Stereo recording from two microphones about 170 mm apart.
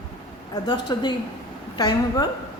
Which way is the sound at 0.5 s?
25° left (ahead or behind).